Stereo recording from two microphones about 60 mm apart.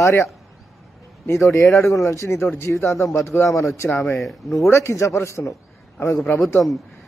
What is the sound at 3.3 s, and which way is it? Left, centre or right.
Speech, left.